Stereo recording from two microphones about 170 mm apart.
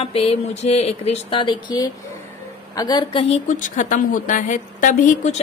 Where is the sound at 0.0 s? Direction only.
35° left (ahead or behind).